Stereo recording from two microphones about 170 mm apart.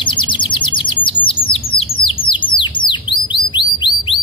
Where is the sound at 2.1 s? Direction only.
30° left (ahead or behind).